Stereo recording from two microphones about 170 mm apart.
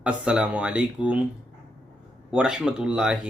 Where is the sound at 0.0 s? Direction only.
5° right (ahead or behind).